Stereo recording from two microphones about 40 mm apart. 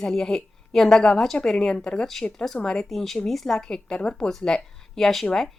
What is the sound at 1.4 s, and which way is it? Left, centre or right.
Speech, centre.